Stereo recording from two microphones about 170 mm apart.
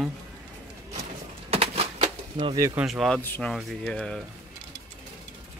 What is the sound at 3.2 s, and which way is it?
Speech, 10° left (ahead or behind).